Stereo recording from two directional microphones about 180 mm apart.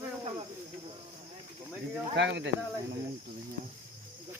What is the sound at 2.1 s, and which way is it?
Speech, 75° right (ahead or behind).